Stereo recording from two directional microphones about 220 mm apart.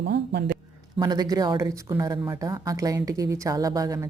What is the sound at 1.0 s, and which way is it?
Speech, 20° right (ahead or behind).